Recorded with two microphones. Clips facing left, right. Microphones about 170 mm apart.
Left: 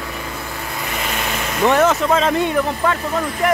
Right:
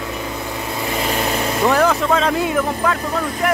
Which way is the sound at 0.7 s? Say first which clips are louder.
Right 4 dB; 30° right (ahead or behind).